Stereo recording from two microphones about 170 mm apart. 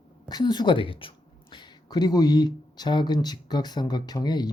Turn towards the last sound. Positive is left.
turn(degrees=25)  # may be behind; listen again after turning